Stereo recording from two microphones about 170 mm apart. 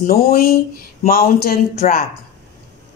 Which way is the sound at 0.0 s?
60° left (ahead or behind).